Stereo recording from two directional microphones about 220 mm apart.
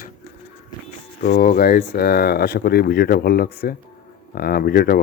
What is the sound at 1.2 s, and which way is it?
Speech, 40° left (ahead or behind).